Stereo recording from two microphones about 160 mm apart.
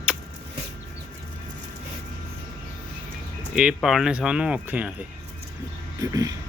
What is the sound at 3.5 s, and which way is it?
Speech, 5° right (ahead or behind).